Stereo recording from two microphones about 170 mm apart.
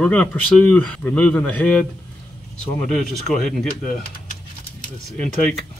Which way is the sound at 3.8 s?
55° left (ahead or behind).